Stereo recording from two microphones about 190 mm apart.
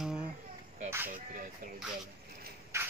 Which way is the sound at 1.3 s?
45° right (ahead or behind).